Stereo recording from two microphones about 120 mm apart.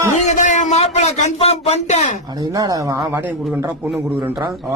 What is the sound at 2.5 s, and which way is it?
Speech, 30° right (ahead or behind).